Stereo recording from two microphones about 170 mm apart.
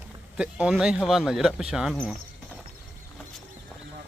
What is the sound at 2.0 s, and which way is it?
Mechanisms, centre (ahead or behind).